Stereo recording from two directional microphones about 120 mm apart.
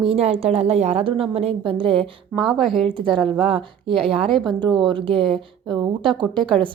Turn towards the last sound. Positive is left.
turn(degrees=-45)  # may be behind; listen again after turning